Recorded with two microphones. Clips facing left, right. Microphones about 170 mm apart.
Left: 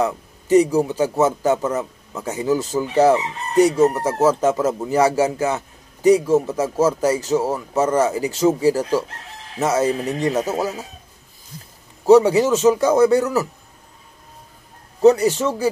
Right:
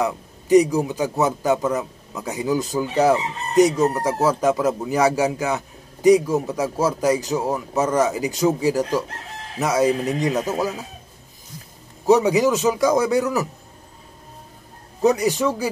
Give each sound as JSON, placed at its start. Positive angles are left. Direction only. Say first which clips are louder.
{"t": 0.0, "sound": "a man's voice", "louder": "left 2 dB", "side_deg": -15}
{"t": 10.3, "sound": "speech", "louder": "left 1 dB", "side_deg": 15}
{"t": 12.1, "sound": "a man's voice", "louder": "left 3 dB", "side_deg": -15}
{"t": 15.0, "sound": "a man's voice", "louder": "left 4 dB", "side_deg": -15}